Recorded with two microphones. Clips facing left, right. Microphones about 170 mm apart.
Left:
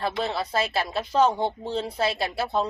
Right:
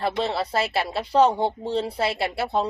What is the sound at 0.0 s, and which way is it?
A woman's voice, 30° right (ahead or behind).